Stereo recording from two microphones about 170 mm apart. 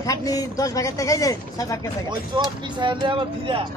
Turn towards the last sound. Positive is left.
turn(degrees=-30)  # may be behind; listen again after turning